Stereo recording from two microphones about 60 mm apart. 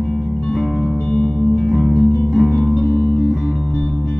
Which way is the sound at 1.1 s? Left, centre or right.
Left.